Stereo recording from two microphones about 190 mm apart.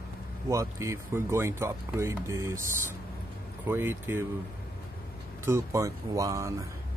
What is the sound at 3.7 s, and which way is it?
Speech, 10° right (ahead or behind).